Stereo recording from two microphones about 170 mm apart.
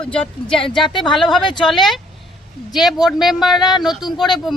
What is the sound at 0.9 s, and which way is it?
Speech, centre (ahead or behind).